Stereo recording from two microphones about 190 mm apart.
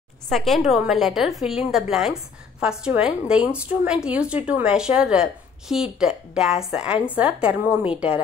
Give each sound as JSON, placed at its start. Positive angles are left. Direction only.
{"t": 0.3, "sound": "a woman's voice", "side_deg": 0}